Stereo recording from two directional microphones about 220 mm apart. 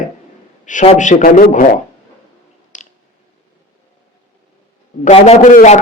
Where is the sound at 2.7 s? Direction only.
35° left (ahead or behind).